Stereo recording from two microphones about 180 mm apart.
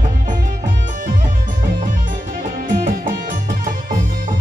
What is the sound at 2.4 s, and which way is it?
Music, 50° right (ahead or behind).